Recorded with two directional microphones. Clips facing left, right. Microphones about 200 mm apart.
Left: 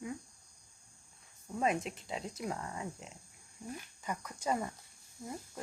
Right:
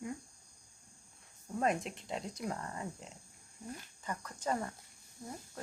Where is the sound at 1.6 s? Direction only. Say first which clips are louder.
Even; centre (ahead or behind).